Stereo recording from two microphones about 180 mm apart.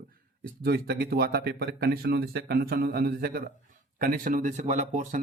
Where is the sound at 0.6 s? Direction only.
60° right (ahead or behind).